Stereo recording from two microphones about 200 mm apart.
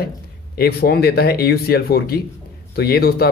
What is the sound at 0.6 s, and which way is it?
Speech, 50° left (ahead or behind).